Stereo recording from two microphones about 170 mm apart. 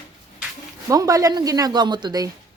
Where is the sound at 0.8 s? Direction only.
20° right (ahead or behind).